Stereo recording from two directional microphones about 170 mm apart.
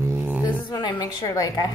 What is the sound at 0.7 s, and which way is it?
A woman's voice, 25° left (ahead or behind).